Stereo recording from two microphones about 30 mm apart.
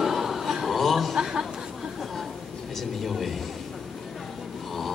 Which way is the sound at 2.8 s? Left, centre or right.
Centre.